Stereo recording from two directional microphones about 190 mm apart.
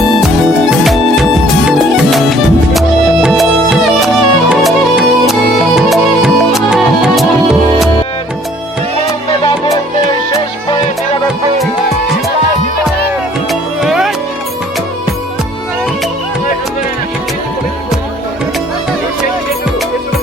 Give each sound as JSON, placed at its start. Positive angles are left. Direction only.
{"t": 2.7, "sound": "music", "side_deg": 0}
{"t": 9.4, "sound": "music", "side_deg": 20}
{"t": 13.5, "sound": "music", "side_deg": 0}